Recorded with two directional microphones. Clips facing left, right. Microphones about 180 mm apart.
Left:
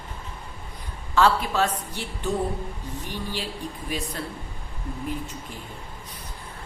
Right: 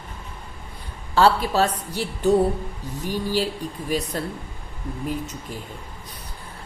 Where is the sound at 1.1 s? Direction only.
35° right (ahead or behind).